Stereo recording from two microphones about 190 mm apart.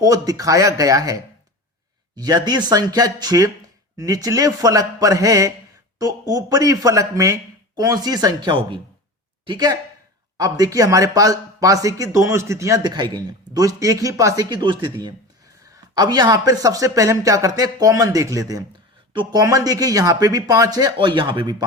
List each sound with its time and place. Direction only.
0.0 s speech: 20° right (ahead or behind)